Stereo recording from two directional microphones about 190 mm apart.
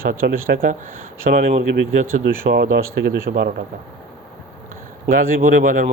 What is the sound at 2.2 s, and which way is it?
Speech, 60° right (ahead or behind).